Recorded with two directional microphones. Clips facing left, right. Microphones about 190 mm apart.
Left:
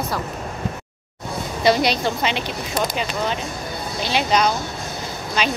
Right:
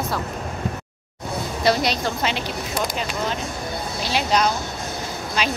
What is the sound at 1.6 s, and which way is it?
Speech, centre (ahead or behind).